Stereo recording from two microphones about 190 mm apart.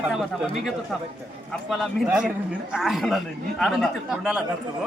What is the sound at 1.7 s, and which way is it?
A man's voice, 5° right (ahead or behind).